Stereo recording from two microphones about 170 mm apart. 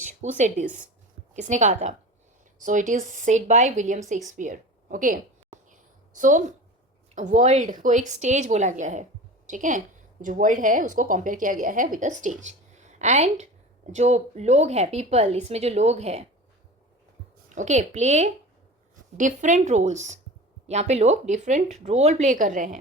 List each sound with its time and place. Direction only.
0.0 s a woman's voice: 45° right (ahead or behind)
17.5 s a woman's voice: 45° right (ahead or behind)